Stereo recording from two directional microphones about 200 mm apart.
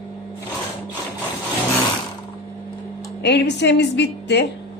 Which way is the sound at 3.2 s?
60° left (ahead or behind).